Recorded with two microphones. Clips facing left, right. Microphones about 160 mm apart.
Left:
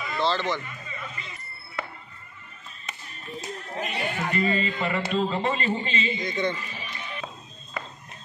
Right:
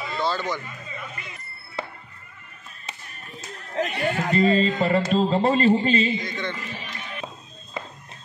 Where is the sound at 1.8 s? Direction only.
30° right (ahead or behind).